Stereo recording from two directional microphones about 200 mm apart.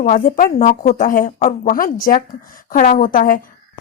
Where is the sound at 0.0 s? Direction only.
40° left (ahead or behind).